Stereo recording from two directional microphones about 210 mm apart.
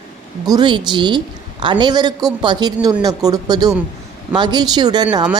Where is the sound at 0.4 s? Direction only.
20° right (ahead or behind).